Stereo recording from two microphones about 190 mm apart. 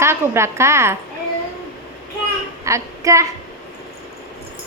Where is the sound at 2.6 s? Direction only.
15° right (ahead or behind).